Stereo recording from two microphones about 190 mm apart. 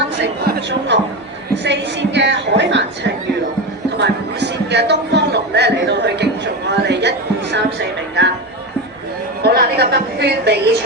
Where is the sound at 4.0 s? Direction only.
60° right (ahead or behind).